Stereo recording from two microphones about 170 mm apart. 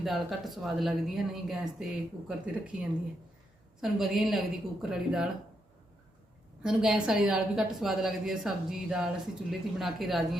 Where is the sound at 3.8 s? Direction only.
Centre (ahead or behind).